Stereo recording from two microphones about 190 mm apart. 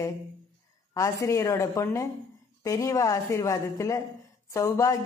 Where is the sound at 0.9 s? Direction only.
15° left (ahead or behind).